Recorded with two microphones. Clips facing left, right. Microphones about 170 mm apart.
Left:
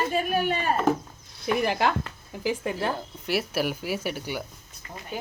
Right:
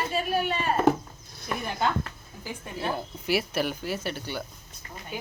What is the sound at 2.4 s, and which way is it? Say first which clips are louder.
Speech: left 7 dB; 90° left.